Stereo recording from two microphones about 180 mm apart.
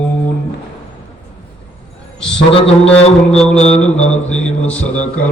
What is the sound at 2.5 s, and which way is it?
Brass instrument, 30° left (ahead or behind).